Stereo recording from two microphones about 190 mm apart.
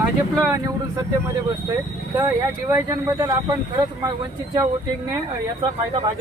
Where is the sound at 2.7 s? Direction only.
15° right (ahead or behind).